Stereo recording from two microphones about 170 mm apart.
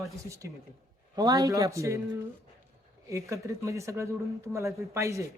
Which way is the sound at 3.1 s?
15° right (ahead or behind).